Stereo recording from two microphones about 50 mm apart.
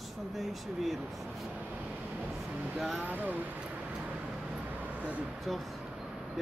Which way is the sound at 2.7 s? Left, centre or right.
Centre.